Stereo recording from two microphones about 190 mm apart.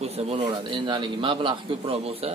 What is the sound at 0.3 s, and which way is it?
A man's voice, 25° right (ahead or behind).